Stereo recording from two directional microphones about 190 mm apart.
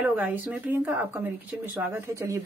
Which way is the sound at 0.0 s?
10° right (ahead or behind).